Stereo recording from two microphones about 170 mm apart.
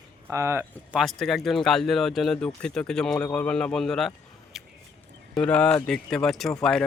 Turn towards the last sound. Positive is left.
turn(degrees=5)  # may be behind; listen again after turning